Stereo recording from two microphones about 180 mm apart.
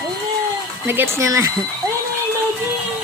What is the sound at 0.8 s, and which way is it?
Speech, 10° right (ahead or behind).